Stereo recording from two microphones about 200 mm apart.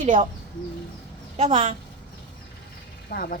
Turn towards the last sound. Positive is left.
turn(degrees=45)  # may be behind; listen again after turning